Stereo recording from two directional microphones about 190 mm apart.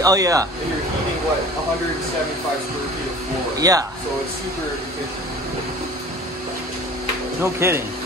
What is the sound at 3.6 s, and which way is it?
Speech, 20° right (ahead or behind).